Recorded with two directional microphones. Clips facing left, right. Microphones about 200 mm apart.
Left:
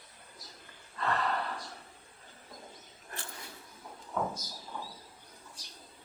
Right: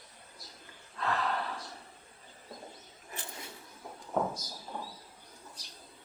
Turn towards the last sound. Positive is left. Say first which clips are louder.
# right 2 dB
turn(degrees=-45)  # may be behind; listen again after turning